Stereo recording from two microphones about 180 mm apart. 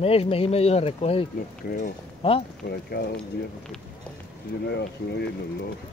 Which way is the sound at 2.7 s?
65° left (ahead or behind).